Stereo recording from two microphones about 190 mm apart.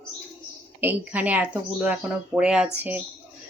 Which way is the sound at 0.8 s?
10° right (ahead or behind).